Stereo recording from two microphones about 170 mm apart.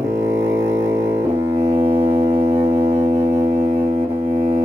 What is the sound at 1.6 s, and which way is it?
Music, 15° right (ahead or behind).